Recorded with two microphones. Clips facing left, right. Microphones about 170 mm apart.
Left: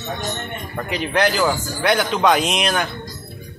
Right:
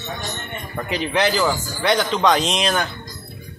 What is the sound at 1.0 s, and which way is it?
Speech, 5° left (ahead or behind).